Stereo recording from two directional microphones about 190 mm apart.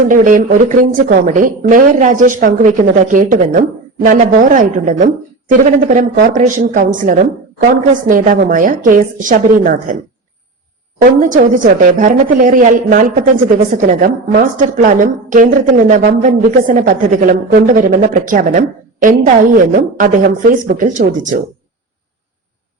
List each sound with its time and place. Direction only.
0.1 s a woman's voice: 45° right (ahead or behind)
11.0 s a woman's voice: 45° right (ahead or behind)